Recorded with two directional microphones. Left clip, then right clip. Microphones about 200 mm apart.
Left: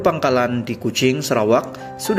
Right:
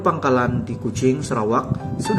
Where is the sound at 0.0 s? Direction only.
15° left (ahead or behind).